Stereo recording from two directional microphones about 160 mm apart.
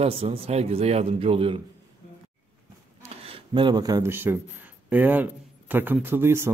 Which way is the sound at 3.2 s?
35° right (ahead or behind).